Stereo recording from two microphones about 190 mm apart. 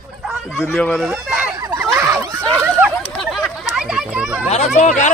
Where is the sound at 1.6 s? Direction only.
15° right (ahead or behind).